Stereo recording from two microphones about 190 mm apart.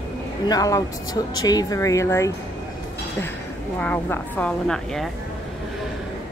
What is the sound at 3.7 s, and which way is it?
Speech, 10° left (ahead or behind).